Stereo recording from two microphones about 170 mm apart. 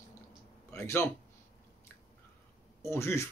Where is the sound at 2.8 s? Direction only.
15° left (ahead or behind).